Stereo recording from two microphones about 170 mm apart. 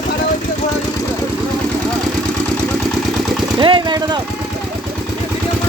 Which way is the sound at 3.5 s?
30° right (ahead or behind).